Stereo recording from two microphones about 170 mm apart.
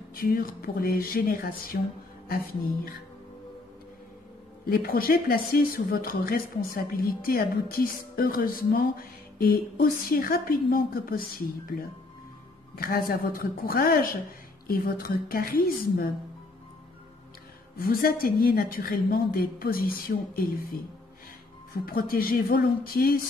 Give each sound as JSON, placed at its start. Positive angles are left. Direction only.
{"t": 0.1, "sound": "speech", "side_deg": 60}
{"t": 4.6, "sound": "speech", "side_deg": 60}
{"t": 12.7, "sound": "speech", "side_deg": 60}
{"t": 17.7, "sound": "speech", "side_deg": 60}
{"t": 21.8, "sound": "speech", "side_deg": 60}